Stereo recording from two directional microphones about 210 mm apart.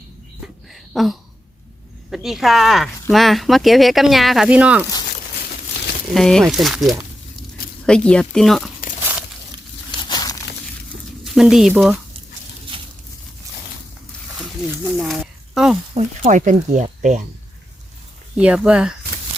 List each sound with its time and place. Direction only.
0.4 s a sound: centre (ahead or behind)
2.0 s speech: centre (ahead or behind)
6.1 s speech: centre (ahead or behind)
10.1 s crumpling: 20° left (ahead or behind)
11.2 s speech: centre (ahead or behind)
12.7 s a sound: 25° right (ahead or behind)
14.3 s speech: centre (ahead or behind)
16.0 s speech: 35° right (ahead or behind)
18.3 s speech: 5° right (ahead or behind)